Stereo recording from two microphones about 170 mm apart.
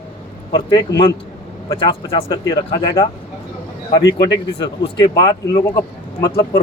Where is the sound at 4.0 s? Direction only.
90° left.